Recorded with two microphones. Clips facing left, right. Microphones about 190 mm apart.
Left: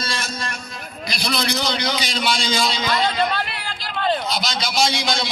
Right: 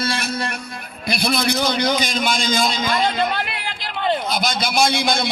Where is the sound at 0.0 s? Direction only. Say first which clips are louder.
Right 5 dB; 60° right (ahead or behind).